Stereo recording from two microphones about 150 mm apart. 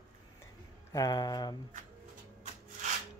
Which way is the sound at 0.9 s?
25° left (ahead or behind).